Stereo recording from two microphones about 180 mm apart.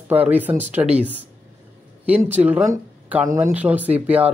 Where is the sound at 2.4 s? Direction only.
10° right (ahead or behind).